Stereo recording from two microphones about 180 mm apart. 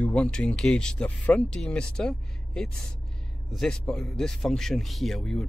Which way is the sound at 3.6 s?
5° left (ahead or behind).